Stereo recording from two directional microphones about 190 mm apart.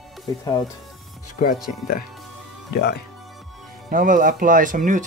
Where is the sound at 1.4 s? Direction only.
40° left (ahead or behind).